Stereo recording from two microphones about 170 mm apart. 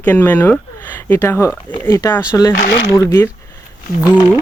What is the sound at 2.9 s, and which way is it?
Speech, 15° left (ahead or behind).